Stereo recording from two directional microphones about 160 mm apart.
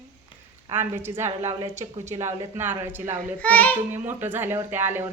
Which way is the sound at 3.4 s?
10° left (ahead or behind).